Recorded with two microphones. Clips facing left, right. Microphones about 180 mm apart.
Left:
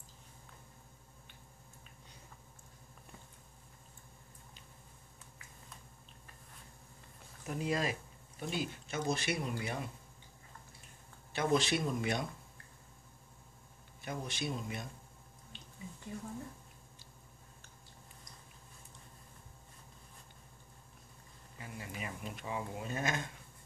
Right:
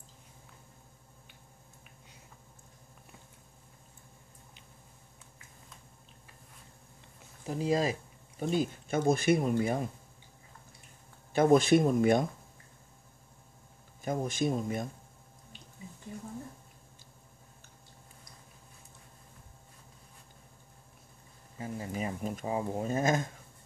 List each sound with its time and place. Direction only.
7.4 s speech: 30° right (ahead or behind)
11.3 s speech: 50° right (ahead or behind)
14.0 s speech: 45° right (ahead or behind)
21.5 s speech: 35° right (ahead or behind)